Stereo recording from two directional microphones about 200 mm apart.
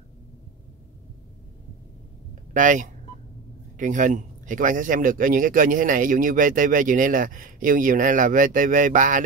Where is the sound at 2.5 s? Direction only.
40° right (ahead or behind).